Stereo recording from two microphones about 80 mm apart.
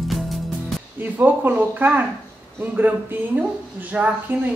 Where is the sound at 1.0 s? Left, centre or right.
Right.